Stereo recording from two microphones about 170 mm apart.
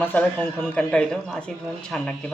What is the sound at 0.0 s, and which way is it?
Speech, 10° left (ahead or behind).